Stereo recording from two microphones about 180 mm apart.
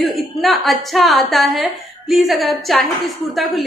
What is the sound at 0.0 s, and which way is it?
A woman's voice, centre (ahead or behind).